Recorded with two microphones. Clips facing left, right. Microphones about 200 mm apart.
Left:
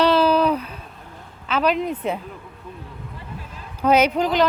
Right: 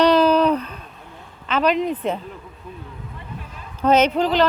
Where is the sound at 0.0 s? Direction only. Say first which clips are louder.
Right 2 dB; 5° left (ahead or behind).